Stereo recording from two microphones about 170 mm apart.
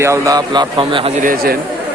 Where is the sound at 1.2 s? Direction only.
60° right (ahead or behind).